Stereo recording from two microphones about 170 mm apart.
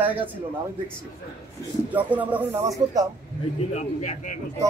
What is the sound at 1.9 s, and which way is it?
Speech, 10° right (ahead or behind).